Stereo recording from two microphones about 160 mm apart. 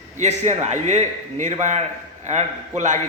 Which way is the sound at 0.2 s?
45° right (ahead or behind).